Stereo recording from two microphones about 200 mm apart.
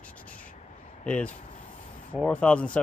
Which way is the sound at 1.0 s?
5° left (ahead or behind).